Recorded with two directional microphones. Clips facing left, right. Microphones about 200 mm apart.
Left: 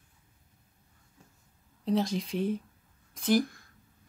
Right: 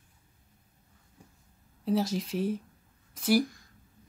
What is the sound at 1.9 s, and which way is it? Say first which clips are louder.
Speech: even; 5° right (ahead or behind).